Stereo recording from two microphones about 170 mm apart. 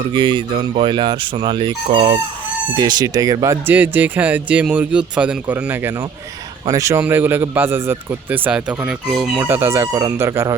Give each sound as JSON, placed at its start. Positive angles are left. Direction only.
{"t": 0.1, "sound": "speech", "side_deg": -30}
{"t": 9.4, "sound": "speech", "side_deg": -15}